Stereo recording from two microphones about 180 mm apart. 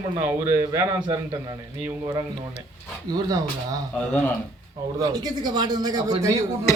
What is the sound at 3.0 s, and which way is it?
Speech, 20° right (ahead or behind).